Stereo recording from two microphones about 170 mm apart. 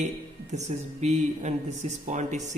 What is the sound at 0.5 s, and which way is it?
Speech, 45° right (ahead or behind).